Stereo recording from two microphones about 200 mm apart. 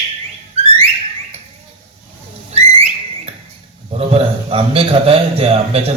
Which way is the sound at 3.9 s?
30° right (ahead or behind).